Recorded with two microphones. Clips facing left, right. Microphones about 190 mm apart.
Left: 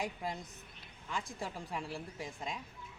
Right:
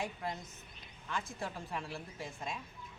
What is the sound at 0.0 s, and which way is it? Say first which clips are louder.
Speech: left 1 dB; 15° left (ahead or behind).